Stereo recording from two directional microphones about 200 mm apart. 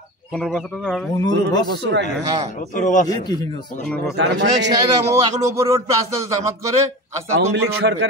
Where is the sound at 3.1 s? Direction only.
20° left (ahead or behind).